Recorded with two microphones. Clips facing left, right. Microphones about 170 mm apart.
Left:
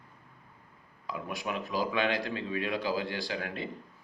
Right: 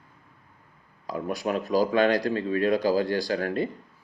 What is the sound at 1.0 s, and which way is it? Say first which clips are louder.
Speech: right 7 dB; 40° right (ahead or behind).